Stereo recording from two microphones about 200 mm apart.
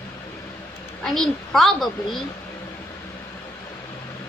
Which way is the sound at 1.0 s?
Centre (ahead or behind).